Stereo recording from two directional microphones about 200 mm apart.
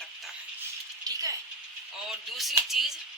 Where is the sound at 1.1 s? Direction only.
20° right (ahead or behind).